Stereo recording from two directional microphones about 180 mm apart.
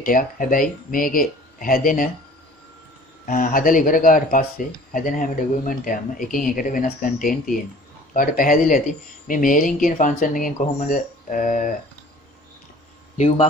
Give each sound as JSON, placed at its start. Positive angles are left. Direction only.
{"t": 0.0, "sound": "speech", "side_deg": 50}
{"t": 3.3, "sound": "speech", "side_deg": 50}